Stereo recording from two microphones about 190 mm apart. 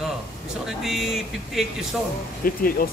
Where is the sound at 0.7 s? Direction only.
Centre (ahead or behind).